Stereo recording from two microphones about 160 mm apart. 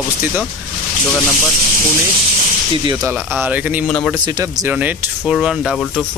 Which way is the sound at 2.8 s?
25° right (ahead or behind).